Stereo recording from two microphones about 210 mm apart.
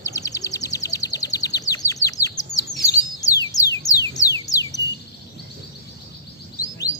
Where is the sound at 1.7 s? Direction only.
15° left (ahead or behind).